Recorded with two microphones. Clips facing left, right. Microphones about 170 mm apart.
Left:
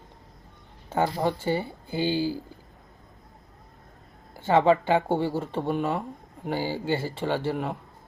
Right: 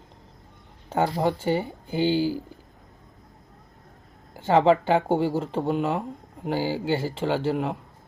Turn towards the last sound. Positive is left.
turn(degrees=-15)  # may be behind; listen again after turning